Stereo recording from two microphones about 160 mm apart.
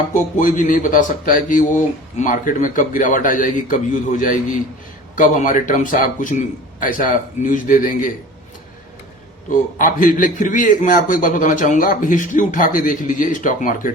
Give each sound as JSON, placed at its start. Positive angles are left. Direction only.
{"t": 0.1, "sound": "a man's voice", "side_deg": 50}
{"t": 9.5, "sound": "a man's voice", "side_deg": 55}